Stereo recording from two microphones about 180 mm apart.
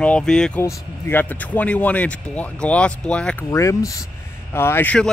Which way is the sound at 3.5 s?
15° left (ahead or behind).